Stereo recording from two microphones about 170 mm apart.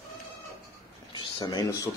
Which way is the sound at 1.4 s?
20° left (ahead or behind).